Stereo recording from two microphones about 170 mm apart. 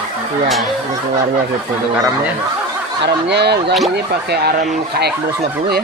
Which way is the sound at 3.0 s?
80° right.